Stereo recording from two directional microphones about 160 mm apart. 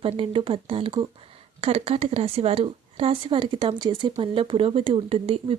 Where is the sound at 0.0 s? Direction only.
35° right (ahead or behind).